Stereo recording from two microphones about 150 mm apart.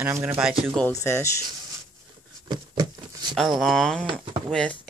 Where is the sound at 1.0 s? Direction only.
20° left (ahead or behind).